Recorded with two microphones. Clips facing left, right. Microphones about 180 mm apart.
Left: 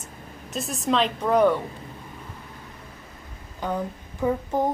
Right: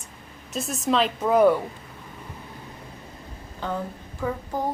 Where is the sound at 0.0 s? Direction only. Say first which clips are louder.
Left 4 dB; centre (ahead or behind).